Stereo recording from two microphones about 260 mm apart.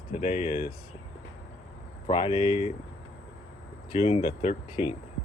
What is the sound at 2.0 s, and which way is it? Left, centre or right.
Speech, centre.